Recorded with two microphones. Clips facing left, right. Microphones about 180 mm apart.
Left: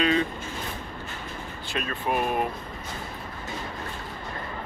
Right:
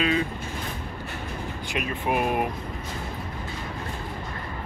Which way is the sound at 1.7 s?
15° right (ahead or behind).